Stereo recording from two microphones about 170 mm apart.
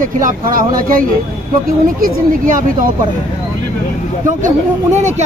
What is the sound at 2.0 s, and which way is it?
Speech, 55° right (ahead or behind).